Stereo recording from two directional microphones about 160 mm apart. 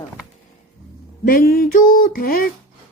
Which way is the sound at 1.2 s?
65° left (ahead or behind).